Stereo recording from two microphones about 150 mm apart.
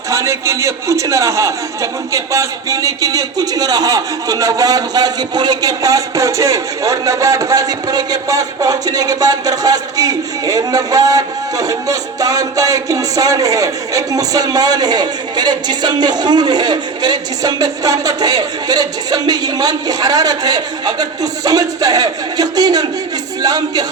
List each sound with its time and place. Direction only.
0.1 s a man's voice: 20° right (ahead or behind)